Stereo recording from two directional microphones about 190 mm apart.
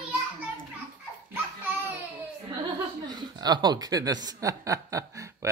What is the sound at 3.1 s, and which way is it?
Speech, 20° right (ahead or behind).